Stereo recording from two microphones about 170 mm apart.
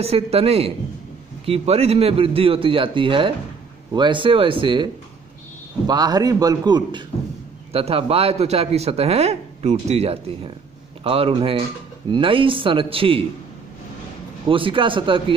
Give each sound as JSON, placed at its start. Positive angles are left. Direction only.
{"t": 0.0, "sound": "a man's voice", "side_deg": -35}
{"t": 5.9, "sound": "a man's voice", "side_deg": -25}
{"t": 14.5, "sound": "speech", "side_deg": -30}